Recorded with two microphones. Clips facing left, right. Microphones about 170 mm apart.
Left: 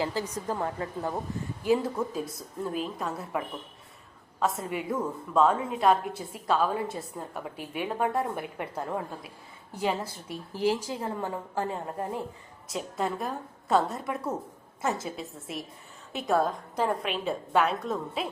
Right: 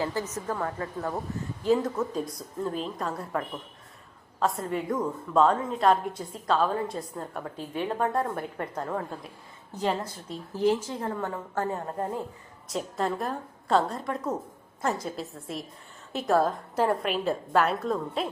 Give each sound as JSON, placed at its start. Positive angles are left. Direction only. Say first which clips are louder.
{"t": 0.0, "sound": "a woman's voice", "louder": "even", "side_deg": 15}
{"t": 12.6, "sound": "a woman's voice", "louder": "right 2 dB", "side_deg": 0}